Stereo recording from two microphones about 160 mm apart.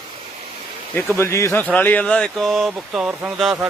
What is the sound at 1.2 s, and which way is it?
A man's voice, 15° left (ahead or behind).